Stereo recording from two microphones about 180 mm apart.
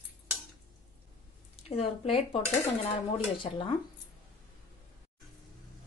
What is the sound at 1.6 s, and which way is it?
Speech, 35° left (ahead or behind).